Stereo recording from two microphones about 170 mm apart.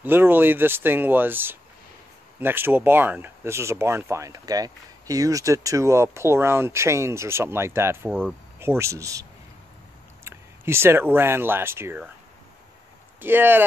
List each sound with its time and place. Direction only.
0.0 s speech: 10° right (ahead or behind)
10.2 s speech: 15° right (ahead or behind)
13.2 s speech: 10° right (ahead or behind)